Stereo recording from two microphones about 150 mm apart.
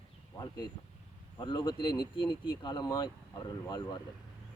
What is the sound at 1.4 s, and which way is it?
Speech, 30° left (ahead or behind).